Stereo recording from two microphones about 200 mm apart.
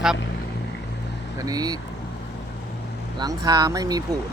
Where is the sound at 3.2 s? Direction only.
20° right (ahead or behind).